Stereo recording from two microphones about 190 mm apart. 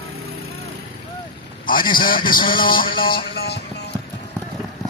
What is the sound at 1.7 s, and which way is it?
Speech, 50° left (ahead or behind).